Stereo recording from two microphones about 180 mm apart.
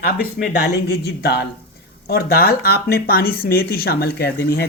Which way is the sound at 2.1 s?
60° left (ahead or behind).